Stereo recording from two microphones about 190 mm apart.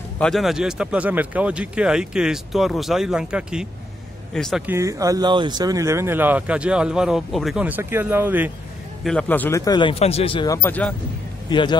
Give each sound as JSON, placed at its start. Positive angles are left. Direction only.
{"t": 0.2, "sound": "speech", "side_deg": 0}
{"t": 4.7, "sound": "speech", "side_deg": -15}
{"t": 9.0, "sound": "a man's voice", "side_deg": 5}
{"t": 9.7, "sound": "speech", "side_deg": 25}
{"t": 11.4, "sound": "speech", "side_deg": 25}